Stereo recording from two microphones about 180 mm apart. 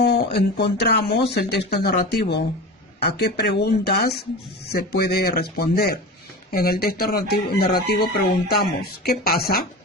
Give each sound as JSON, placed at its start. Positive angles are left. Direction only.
{"t": 0.0, "sound": "speech", "side_deg": 65}